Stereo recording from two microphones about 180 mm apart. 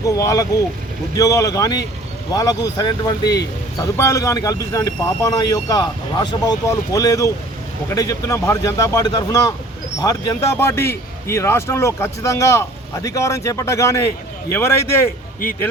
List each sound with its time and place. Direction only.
0.0 s a man's voice: 20° left (ahead or behind)